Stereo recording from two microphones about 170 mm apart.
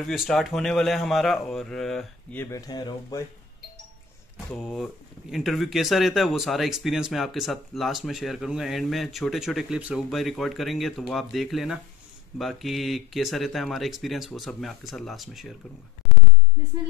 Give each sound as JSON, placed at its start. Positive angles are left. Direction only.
{"t": 0.0, "sound": "speech", "side_deg": 0}
{"t": 2.5, "sound": "speech", "side_deg": 20}
{"t": 4.5, "sound": "speech", "side_deg": 0}